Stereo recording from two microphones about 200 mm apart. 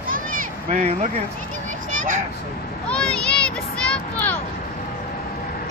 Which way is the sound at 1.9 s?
40° right (ahead or behind).